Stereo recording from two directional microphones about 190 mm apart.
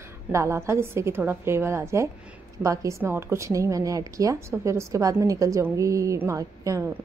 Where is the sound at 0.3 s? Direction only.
15° right (ahead or behind).